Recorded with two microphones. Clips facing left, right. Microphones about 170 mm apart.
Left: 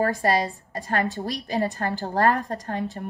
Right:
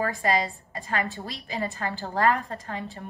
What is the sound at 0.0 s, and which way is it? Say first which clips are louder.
A woman's voice: left 3 dB; 40° left (ahead or behind).